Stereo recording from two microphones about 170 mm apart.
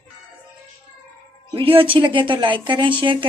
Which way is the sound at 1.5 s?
30° right (ahead or behind).